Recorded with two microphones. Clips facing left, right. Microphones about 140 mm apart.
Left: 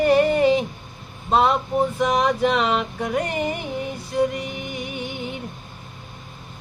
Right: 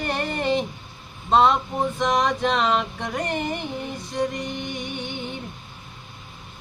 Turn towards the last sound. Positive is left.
turn(degrees=5)  # may be behind; listen again after turning